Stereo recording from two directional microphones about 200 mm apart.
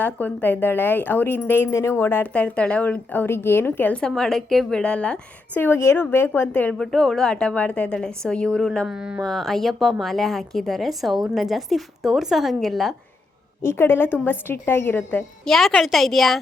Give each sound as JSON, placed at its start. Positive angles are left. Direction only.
{"t": 0.0, "sound": "speech", "side_deg": 10}
{"t": 13.6, "sound": "a woman's voice", "side_deg": 10}